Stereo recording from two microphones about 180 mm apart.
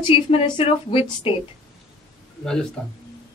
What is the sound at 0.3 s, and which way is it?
A woman's voice, 30° left (ahead or behind).